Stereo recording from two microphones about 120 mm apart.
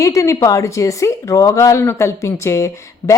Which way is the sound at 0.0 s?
25° left (ahead or behind).